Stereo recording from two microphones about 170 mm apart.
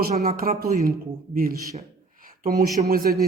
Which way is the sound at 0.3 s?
55° right (ahead or behind).